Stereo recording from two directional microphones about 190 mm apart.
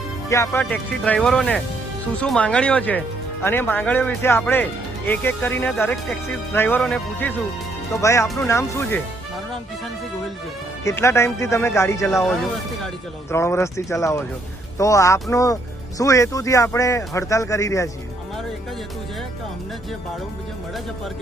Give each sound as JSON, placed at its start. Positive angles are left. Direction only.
{"t": 0.3, "sound": "speech", "side_deg": 15}
{"t": 10.8, "sound": "speech", "side_deg": 15}
{"t": 13.3, "sound": "speech", "side_deg": 15}